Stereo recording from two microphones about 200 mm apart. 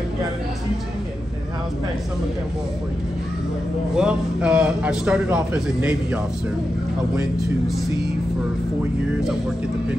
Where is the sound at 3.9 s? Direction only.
5° right (ahead or behind).